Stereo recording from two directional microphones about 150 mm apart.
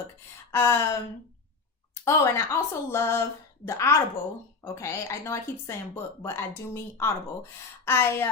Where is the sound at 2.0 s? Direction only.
15° left (ahead or behind).